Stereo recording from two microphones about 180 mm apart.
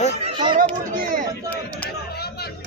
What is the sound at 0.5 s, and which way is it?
Chatter, 50° right (ahead or behind).